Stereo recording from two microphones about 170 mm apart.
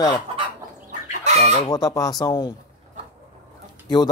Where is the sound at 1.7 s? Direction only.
20° left (ahead or behind).